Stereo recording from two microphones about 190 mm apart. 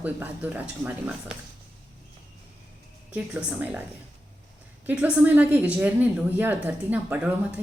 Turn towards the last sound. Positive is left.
turn(degrees=-5)  # may be behind; listen again after turning